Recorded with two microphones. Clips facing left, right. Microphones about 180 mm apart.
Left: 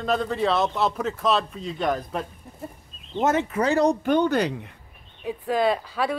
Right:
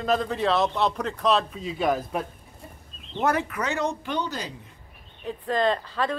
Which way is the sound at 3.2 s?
20° left (ahead or behind).